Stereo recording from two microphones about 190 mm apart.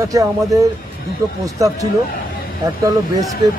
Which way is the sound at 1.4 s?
15° right (ahead or behind).